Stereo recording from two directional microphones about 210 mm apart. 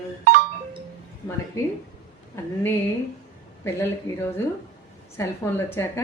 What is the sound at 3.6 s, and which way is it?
A woman's voice, 10° left (ahead or behind).